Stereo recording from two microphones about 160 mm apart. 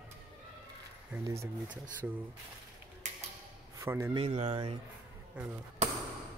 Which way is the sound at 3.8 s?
20° right (ahead or behind).